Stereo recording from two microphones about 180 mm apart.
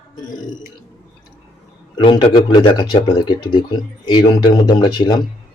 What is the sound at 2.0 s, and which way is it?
Speech, 25° left (ahead or behind).